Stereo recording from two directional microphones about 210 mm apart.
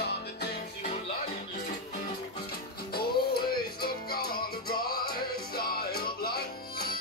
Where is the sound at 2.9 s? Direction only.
45° left (ahead or behind).